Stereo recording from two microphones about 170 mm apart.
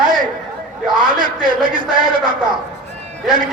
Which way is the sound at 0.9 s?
25° right (ahead or behind).